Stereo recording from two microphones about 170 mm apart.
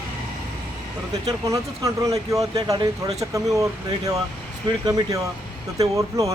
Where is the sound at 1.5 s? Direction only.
20° right (ahead or behind).